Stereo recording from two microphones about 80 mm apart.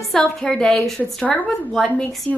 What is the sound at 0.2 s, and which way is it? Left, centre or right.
A woman's voice, centre.